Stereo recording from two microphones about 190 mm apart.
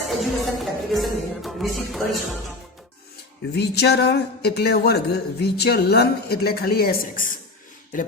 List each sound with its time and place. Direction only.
0.1 s music: centre (ahead or behind)
3.5 s speech: 60° left (ahead or behind)